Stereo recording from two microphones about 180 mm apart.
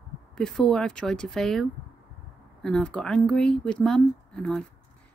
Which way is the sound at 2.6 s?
5° left (ahead or behind).